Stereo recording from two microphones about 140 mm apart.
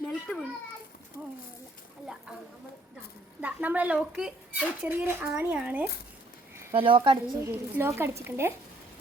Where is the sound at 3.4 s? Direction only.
10° right (ahead or behind).